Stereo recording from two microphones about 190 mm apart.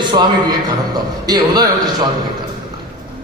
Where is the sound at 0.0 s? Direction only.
25° right (ahead or behind).